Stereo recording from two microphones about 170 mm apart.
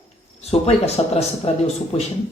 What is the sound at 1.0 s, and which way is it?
Speech, 35° left (ahead or behind).